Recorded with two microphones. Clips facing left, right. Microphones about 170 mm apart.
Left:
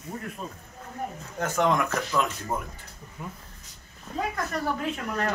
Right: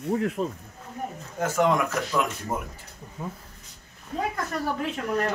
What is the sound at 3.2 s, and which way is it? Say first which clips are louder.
Speech: right 4 dB; 25° right (ahead or behind).